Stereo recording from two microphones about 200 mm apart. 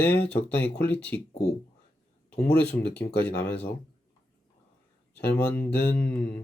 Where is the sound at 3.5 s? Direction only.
10° left (ahead or behind).